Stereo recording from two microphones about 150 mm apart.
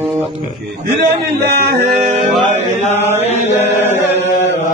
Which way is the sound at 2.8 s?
45° left (ahead or behind).